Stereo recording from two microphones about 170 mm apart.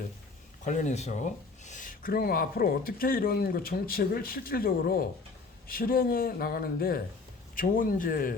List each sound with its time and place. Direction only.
0.6 s speech: 45° left (ahead or behind)